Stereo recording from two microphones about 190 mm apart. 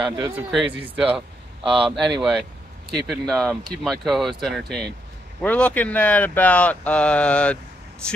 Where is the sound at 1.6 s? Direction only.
30° right (ahead or behind).